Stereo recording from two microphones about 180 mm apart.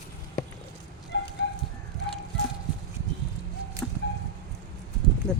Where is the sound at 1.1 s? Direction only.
85° left.